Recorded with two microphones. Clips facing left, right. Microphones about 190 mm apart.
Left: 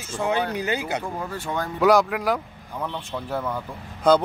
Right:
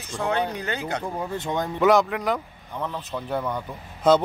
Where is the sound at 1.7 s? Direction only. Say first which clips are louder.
Left 1 dB; centre (ahead or behind).